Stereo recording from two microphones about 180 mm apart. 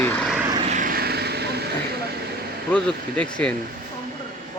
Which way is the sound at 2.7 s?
5° left (ahead or behind).